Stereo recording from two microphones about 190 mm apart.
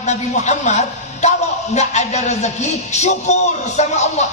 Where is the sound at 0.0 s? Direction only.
35° left (ahead or behind).